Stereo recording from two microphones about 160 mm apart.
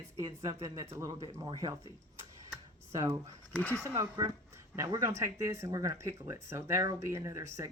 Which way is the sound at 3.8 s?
20° right (ahead or behind).